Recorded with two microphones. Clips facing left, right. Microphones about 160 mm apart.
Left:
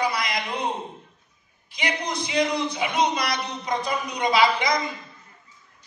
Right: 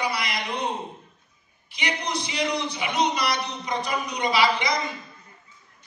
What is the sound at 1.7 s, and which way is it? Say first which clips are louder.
A man's voice: left 1 dB; 50° left (ahead or behind).